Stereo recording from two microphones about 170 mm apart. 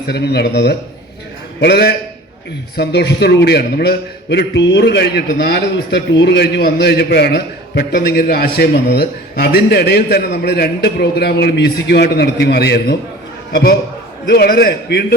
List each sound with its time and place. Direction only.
0.1 s a man's voice: 75° left (ahead or behind)